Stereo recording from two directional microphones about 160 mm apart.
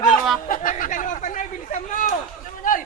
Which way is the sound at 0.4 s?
60° left (ahead or behind).